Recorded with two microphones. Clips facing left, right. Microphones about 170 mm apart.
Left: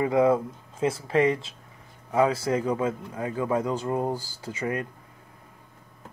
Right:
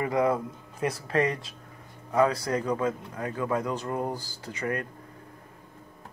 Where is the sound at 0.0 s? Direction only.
25° left (ahead or behind).